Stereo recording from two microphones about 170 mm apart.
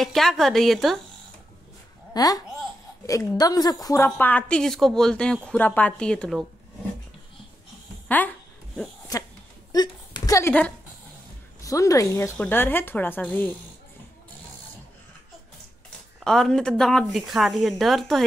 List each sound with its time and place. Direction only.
0.0 s speech: centre (ahead or behind)
2.1 s a woman's voice: 20° left (ahead or behind); by 6.4 s 5° left (ahead or behind)
9.7 s a sound: 25° left (ahead or behind)
11.6 s a woman's voice: 20° left (ahead or behind)
16.3 s speech: 5° left (ahead or behind)